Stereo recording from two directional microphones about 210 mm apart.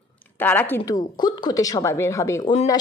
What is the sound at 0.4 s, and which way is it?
A woman's voice, 10° left (ahead or behind).